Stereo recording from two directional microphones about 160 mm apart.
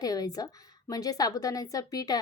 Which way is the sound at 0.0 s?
25° left (ahead or behind).